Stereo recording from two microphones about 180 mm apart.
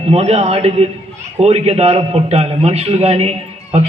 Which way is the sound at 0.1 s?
35° right (ahead or behind).